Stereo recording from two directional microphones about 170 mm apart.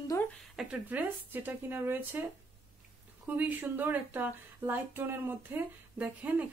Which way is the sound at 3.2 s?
10° right (ahead or behind).